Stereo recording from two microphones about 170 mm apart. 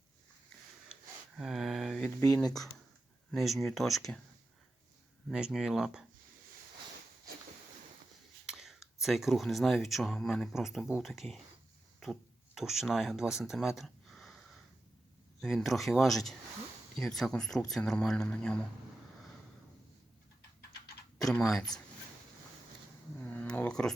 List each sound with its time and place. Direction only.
1.4 s mantra: centre (ahead or behind)
2.0 s speech: 20° left (ahead or behind)
3.3 s speech: centre (ahead or behind)
5.3 s speech: 5° right (ahead or behind)
8.4 s speech: 5° right (ahead or behind)
12.5 s speech: centre (ahead or behind)
15.4 s speech: centre (ahead or behind)
21.2 s speech: centre (ahead or behind)
23.2 s a sound: 10° left (ahead or behind)